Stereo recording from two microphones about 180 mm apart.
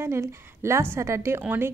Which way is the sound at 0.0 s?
15° right (ahead or behind).